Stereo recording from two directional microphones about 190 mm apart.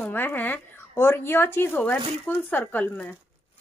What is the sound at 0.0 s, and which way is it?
A woman's voice, 10° left (ahead or behind).